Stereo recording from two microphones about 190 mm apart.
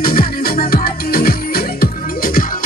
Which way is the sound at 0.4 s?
50° left (ahead or behind).